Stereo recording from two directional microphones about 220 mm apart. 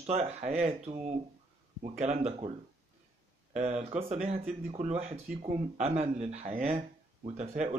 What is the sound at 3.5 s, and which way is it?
Speech, 30° right (ahead or behind).